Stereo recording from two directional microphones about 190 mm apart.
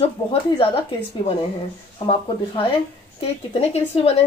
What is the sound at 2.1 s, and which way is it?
A woman's voice, 25° left (ahead or behind).